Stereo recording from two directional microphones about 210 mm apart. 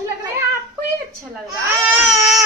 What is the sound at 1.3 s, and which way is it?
Speech, 10° right (ahead or behind).